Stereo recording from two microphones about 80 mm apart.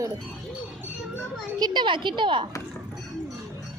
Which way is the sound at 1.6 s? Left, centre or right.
Right.